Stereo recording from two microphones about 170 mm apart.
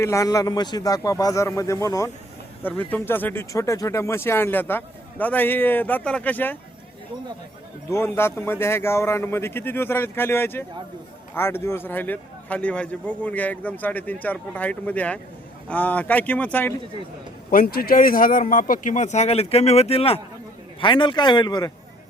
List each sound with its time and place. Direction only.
0.0 s a man's voice: 15° left (ahead or behind)
7.9 s speech: 15° left (ahead or behind)
17.5 s a man's voice: 60° left (ahead or behind); by 21.7 s 25° left (ahead or behind)